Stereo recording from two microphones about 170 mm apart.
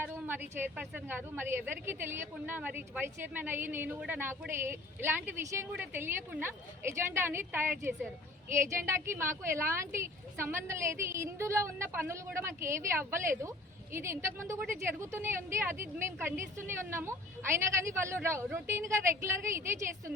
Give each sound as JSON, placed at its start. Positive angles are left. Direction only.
{"t": 0.0, "sound": "a woman's voice", "side_deg": -10}